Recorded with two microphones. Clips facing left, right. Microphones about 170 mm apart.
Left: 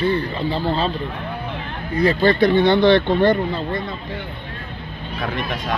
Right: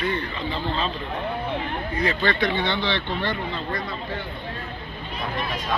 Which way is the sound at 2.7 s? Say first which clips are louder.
Left 12 dB; 50° left (ahead or behind).